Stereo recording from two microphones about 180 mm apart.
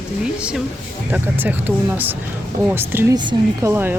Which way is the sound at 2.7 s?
10° right (ahead or behind).